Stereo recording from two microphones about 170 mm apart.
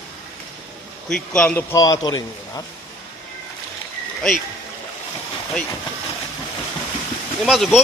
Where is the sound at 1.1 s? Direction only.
5° left (ahead or behind); by 2.6 s 20° left (ahead or behind).